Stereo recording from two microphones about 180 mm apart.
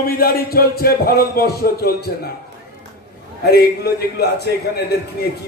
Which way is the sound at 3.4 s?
60° left (ahead or behind).